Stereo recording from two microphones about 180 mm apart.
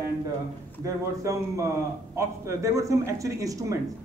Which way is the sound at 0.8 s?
15° right (ahead or behind).